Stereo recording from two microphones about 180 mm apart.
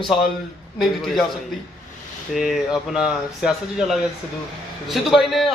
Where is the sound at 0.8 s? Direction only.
Centre (ahead or behind).